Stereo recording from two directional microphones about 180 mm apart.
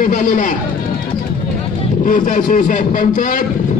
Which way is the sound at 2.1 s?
45° left (ahead or behind).